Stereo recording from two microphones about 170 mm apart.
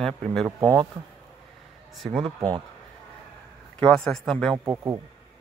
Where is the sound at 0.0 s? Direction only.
5° left (ahead or behind).